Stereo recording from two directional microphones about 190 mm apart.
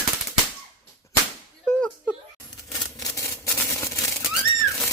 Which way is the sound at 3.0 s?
15° left (ahead or behind).